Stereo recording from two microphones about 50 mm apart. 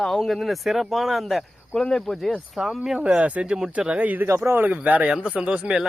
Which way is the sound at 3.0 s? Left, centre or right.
Right.